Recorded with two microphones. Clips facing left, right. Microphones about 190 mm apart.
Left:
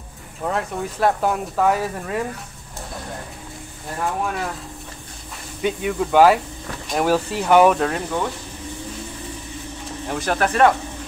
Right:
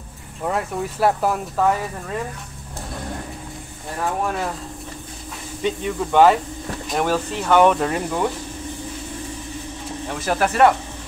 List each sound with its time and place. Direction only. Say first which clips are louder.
0.4 s speech: right 1 dB; 5° right (ahead or behind)
5.6 s speech: left 1 dB; 5° left (ahead or behind)
7.7 s speech: even; 5° right (ahead or behind)
10.0 s speech: even; centre (ahead or behind)